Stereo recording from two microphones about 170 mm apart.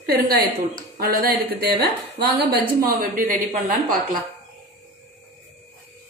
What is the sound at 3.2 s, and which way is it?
Speech, 55° right (ahead or behind).